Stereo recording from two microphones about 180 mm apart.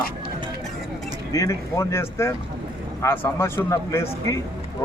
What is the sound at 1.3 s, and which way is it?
Speech, 15° left (ahead or behind).